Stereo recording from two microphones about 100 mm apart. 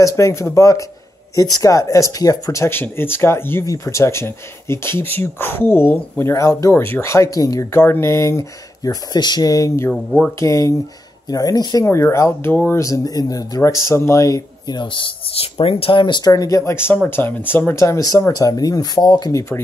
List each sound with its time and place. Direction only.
0.0 s speech: 30° left (ahead or behind)
7.8 s speech: 25° left (ahead or behind)
9.1 s speech: 45° left (ahead or behind)
11.8 s speech: 30° left (ahead or behind)
12.8 s speech: 35° left (ahead or behind)
14.8 s speech: 55° left (ahead or behind)
16.3 s speech: 35° left (ahead or behind)
17.1 s speech: 20° left (ahead or behind)
17.7 s speech: 30° left (ahead or behind)